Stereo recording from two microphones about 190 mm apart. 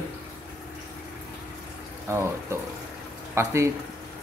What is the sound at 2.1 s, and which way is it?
Speech, 15° right (ahead or behind).